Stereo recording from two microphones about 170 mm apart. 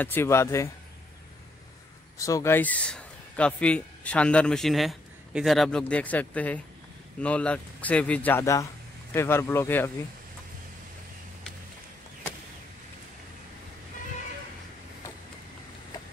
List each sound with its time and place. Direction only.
0.0 s speech: 15° left (ahead or behind)
2.1 s a man's voice: 20° left (ahead or behind)